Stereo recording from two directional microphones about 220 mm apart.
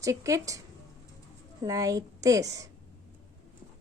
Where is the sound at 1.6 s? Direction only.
15° right (ahead or behind).